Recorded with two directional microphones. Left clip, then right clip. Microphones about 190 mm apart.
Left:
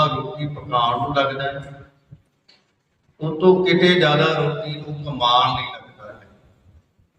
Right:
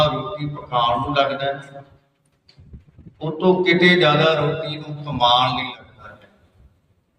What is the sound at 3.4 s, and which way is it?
A man's voice, 55° right (ahead or behind).